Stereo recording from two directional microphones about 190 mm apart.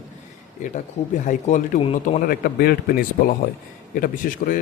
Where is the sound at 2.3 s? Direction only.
50° left (ahead or behind).